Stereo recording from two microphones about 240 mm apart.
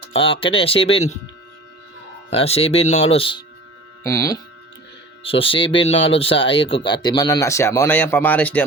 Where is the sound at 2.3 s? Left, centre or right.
Left.